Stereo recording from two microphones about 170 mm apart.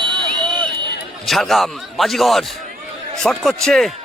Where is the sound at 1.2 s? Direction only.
Centre (ahead or behind).